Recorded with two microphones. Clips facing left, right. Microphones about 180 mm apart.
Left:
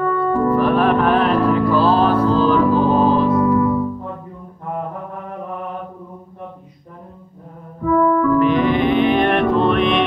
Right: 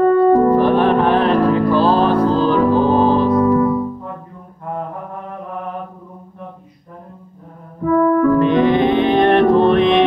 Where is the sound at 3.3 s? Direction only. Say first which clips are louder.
Right 2 dB; 40° right (ahead or behind).